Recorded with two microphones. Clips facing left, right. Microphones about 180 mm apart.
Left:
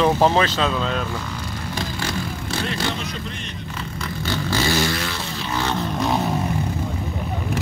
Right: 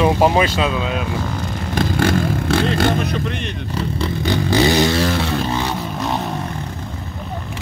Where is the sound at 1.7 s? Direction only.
55° right (ahead or behind).